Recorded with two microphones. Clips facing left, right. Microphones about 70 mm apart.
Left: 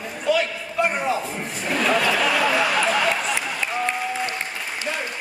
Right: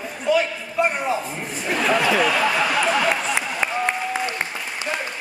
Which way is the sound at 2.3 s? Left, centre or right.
Centre.